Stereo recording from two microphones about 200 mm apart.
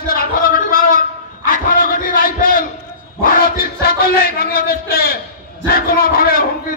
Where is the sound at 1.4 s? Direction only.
45° left (ahead or behind).